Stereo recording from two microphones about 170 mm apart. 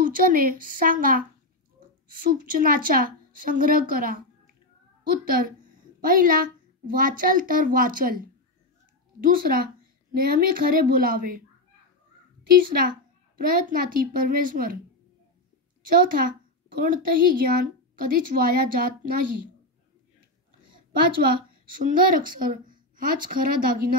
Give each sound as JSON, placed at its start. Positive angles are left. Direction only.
{"t": 0.0, "sound": "a child's voice", "side_deg": -55}
{"t": 9.2, "sound": "a child's voice", "side_deg": -60}
{"t": 12.5, "sound": "a child's voice", "side_deg": -55}
{"t": 15.9, "sound": "a child's voice", "side_deg": -55}
{"t": 21.7, "sound": "a woman's voice", "side_deg": -55}